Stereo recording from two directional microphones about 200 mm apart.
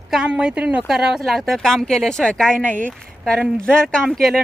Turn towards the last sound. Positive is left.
turn(degrees=0)  # may be behind; listen again after turning